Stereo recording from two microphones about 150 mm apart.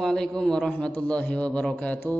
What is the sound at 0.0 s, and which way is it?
A man's voice, 5° left (ahead or behind).